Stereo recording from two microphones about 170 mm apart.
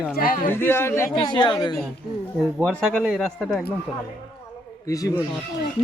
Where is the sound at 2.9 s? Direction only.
Centre (ahead or behind).